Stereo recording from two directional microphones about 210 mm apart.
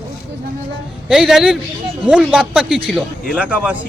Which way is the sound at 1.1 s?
Centre (ahead or behind).